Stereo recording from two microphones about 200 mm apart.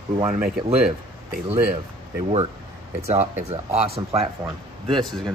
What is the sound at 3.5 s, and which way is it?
Speech, 30° right (ahead or behind).